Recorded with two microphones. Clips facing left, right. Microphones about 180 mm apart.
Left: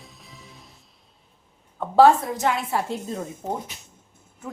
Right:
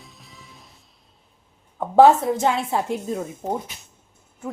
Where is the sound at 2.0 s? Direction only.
25° right (ahead or behind).